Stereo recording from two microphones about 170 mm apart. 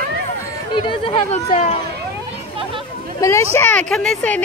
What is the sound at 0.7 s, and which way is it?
Speech, 30° left (ahead or behind).